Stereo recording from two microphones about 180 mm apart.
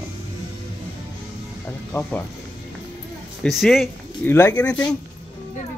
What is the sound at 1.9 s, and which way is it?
Speech, 10° left (ahead or behind).